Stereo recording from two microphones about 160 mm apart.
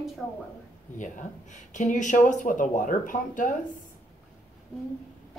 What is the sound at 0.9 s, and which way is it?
Speech, 50° left (ahead or behind).